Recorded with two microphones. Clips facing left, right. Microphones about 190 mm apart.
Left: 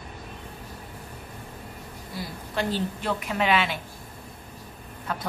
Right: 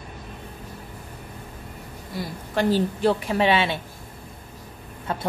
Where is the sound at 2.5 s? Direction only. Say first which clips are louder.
Right 6 dB; 35° right (ahead or behind).